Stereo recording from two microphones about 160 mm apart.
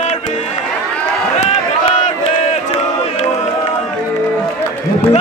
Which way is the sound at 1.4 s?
45° left (ahead or behind).